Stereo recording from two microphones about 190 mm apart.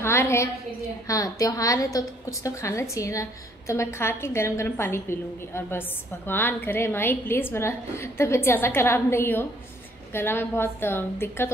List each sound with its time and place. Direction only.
0.0 s a woman's voice: 15° left (ahead or behind)